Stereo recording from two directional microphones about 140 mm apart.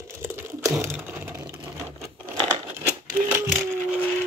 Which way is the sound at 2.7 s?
15° right (ahead or behind).